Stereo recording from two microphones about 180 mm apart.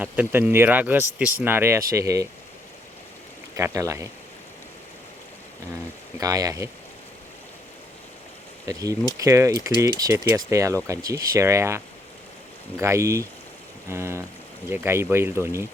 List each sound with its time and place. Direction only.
0.0 s speech: 10° right (ahead or behind)
3.5 s speech: 15° right (ahead or behind)
6.1 s speech: 20° right (ahead or behind)
8.6 s speech: 20° right (ahead or behind)
12.8 s speech: 15° right (ahead or behind)